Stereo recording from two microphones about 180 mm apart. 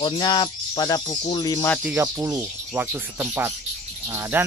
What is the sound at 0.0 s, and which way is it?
Speech, 25° left (ahead or behind).